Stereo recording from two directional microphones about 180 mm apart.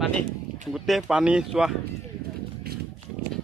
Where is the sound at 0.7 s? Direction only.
Centre (ahead or behind).